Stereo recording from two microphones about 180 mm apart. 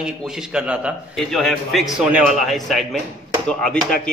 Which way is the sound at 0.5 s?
5° right (ahead or behind).